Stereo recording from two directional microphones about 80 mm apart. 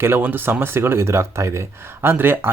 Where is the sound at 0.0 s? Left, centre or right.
Right.